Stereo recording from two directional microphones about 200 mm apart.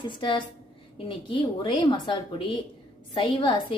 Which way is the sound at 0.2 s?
25° left (ahead or behind).